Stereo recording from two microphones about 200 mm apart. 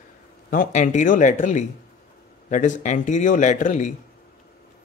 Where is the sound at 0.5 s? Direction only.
40° left (ahead or behind).